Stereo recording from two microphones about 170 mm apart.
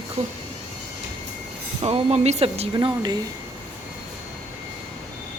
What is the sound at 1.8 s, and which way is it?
Speech, 40° right (ahead or behind).